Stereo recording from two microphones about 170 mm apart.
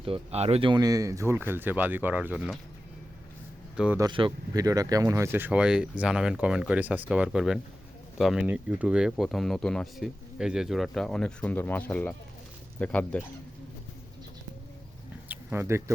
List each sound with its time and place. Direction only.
0.0 s speech: 35° right (ahead or behind); by 2.6 s 5° right (ahead or behind)
3.8 s speech: 10° right (ahead or behind)
4.0 s speech: 25° right (ahead or behind); by 13.2 s 10° left (ahead or behind)
15.3 s a sound: 10° right (ahead or behind)